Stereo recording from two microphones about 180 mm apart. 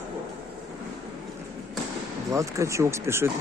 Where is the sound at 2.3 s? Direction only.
15° right (ahead or behind).